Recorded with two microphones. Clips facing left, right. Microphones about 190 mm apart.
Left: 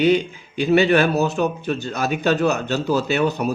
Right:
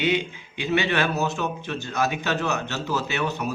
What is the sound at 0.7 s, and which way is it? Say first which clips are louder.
A man's voice: left 8 dB; 35° left (ahead or behind).